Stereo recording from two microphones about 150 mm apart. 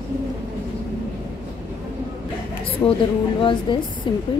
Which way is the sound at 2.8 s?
25° left (ahead or behind).